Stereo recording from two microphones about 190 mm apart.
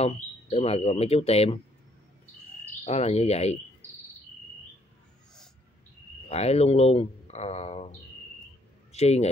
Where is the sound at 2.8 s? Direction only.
35° left (ahead or behind).